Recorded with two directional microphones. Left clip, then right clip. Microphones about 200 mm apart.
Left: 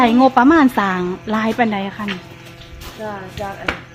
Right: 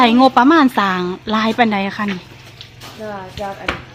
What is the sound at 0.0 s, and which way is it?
A woman's voice, 10° right (ahead or behind).